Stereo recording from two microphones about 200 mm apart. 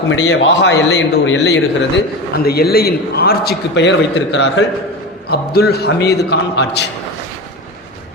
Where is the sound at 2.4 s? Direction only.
50° left (ahead or behind).